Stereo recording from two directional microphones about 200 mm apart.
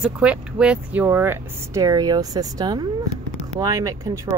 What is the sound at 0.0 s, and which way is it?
Speech, 5° right (ahead or behind).